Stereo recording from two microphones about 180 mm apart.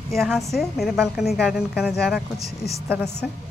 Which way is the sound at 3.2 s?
Centre (ahead or behind).